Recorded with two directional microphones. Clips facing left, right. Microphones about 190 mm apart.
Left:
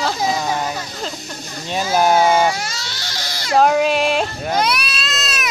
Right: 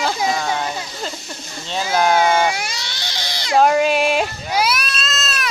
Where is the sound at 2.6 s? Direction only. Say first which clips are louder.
Even; 15° right (ahead or behind).